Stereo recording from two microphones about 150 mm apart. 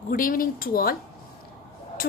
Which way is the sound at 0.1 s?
70° left (ahead or behind).